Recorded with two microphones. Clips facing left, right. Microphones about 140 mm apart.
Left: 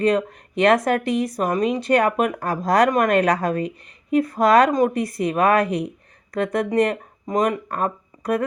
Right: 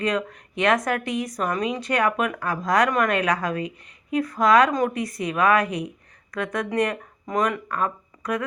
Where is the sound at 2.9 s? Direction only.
45° left (ahead or behind).